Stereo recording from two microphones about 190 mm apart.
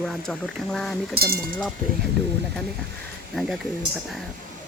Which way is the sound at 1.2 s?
55° right (ahead or behind).